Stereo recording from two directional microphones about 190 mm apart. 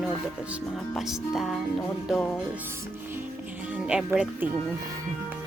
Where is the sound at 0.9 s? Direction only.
Centre (ahead or behind).